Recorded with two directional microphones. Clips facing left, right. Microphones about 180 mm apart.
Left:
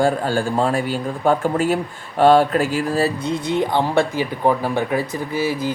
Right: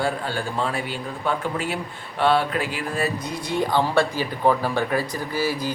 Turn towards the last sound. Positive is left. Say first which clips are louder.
# left 3 dB
turn(degrees=20)  # may be behind; listen again after turning